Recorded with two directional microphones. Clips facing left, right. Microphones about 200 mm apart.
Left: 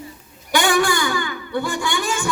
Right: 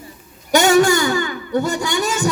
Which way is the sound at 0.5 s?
40° right (ahead or behind).